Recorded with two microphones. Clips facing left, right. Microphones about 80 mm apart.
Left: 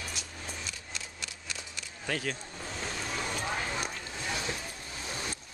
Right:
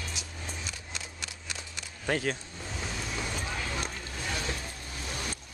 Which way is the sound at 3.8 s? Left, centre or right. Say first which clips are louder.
Even; centre.